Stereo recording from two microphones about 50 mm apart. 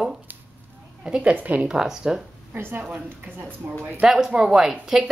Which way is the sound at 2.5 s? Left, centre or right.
Right.